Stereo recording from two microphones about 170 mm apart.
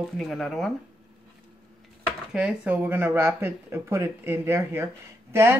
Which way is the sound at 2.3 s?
5° right (ahead or behind).